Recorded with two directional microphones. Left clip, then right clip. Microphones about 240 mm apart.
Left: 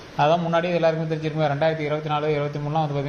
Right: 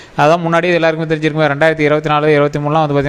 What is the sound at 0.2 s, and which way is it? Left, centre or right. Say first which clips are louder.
A man's voice: right 8 dB; right.